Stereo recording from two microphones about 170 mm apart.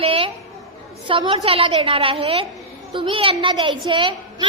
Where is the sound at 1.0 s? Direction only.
30° right (ahead or behind).